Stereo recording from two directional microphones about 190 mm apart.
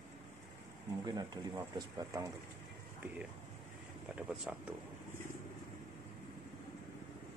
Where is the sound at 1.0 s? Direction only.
20° right (ahead or behind).